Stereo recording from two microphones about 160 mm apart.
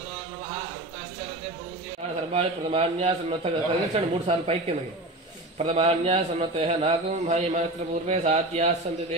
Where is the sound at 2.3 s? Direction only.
40° right (ahead or behind).